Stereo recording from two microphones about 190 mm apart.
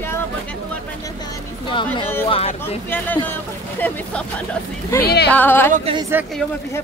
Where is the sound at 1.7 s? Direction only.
25° left (ahead or behind).